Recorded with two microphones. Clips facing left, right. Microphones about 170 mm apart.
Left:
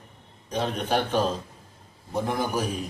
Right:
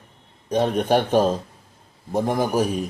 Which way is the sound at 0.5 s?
45° right (ahead or behind).